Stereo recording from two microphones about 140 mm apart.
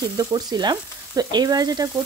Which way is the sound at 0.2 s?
30° right (ahead or behind).